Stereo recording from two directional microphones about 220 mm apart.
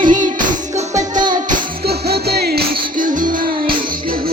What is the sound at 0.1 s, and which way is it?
Music, 35° right (ahead or behind).